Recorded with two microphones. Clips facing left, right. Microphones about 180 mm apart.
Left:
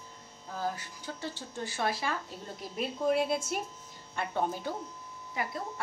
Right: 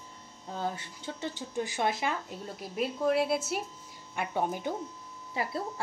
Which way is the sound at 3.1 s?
5° right (ahead or behind).